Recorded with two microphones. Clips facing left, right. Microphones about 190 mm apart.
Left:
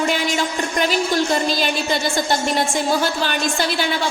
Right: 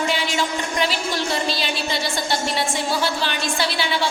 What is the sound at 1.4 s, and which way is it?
A woman's voice, 45° left (ahead or behind).